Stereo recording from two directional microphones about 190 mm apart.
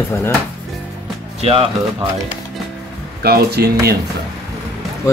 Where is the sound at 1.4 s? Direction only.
30° right (ahead or behind).